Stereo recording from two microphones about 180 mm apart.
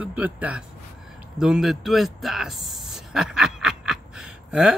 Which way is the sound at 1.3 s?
5° right (ahead or behind).